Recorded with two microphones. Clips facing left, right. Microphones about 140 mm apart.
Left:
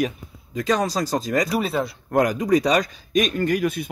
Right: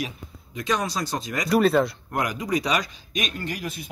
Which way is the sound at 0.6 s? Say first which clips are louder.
Left 4 dB; 35° left (ahead or behind).